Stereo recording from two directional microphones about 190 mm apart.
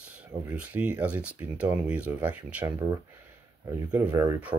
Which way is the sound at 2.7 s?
20° right (ahead or behind).